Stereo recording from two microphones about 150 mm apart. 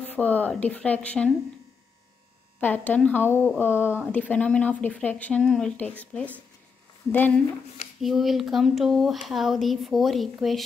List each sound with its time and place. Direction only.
0.0 s speech: 10° left (ahead or behind)
2.6 s speech: 10° left (ahead or behind)
8.0 s speech: centre (ahead or behind)